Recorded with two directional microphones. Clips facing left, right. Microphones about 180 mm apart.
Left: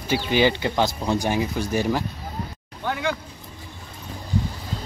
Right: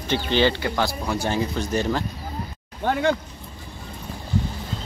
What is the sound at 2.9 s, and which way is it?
Speech, 45° right (ahead or behind).